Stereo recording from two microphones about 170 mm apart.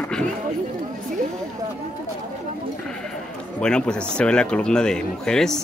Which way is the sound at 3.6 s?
5° left (ahead or behind).